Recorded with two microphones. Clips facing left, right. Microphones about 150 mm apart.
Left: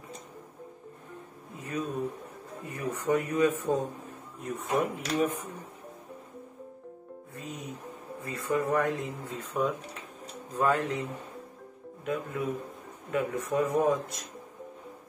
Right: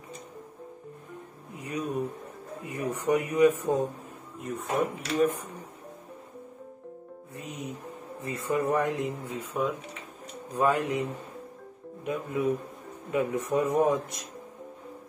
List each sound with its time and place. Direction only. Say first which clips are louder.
1.6 s a sound: right 1 dB; 15° right (ahead or behind)
2.6 s speech: right 2 dB; 15° right (ahead or behind)
4.4 s speech: even; centre (ahead or behind)
7.3 s music: right 2 dB; 20° right (ahead or behind)
8.2 s speech: right 1 dB; 20° right (ahead or behind)
9.5 s speech: even; centre (ahead or behind)
10.5 s speech: right 2 dB; 15° right (ahead or behind)